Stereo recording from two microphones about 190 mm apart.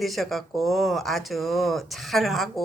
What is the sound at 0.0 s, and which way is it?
Speech, centre (ahead or behind).